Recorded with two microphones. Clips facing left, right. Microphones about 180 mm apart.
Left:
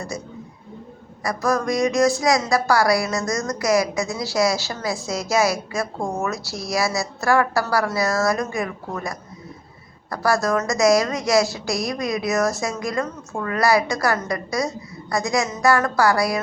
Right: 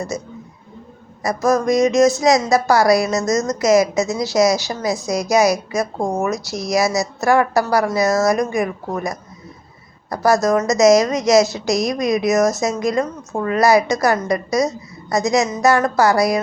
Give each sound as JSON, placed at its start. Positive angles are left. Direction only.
{"t": 0.1, "sound": "speech", "side_deg": -20}